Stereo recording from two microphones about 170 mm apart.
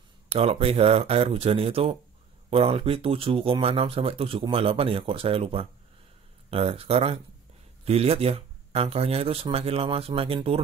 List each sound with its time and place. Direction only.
0.3 s speech: 35° right (ahead or behind)